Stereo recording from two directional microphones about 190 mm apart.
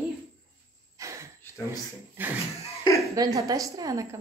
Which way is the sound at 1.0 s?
15° right (ahead or behind).